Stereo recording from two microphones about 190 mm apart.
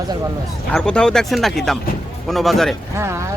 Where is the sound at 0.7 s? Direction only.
5° left (ahead or behind).